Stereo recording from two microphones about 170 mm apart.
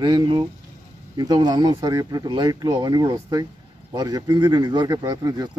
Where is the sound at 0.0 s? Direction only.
25° right (ahead or behind).